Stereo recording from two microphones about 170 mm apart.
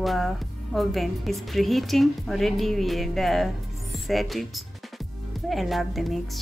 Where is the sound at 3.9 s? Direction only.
Centre (ahead or behind).